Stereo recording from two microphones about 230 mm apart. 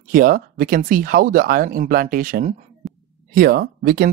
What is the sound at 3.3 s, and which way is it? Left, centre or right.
Speech, right.